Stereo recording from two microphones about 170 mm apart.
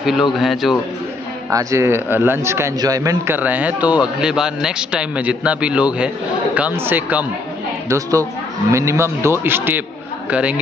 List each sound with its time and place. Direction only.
0.0 s speech: centre (ahead or behind)
1.5 s a man's voice: 20° right (ahead or behind)